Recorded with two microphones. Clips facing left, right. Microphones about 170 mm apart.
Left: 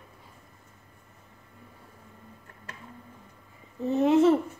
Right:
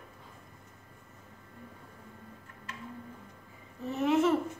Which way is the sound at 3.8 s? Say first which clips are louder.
Left 6 dB; 30° left (ahead or behind).